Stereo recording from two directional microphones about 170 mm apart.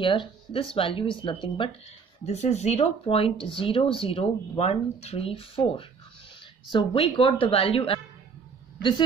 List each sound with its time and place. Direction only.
0.0 s speech: 30° left (ahead or behind)
2.2 s speech: 40° left (ahead or behind)